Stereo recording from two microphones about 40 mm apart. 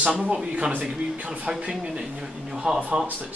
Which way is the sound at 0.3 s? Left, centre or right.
Right.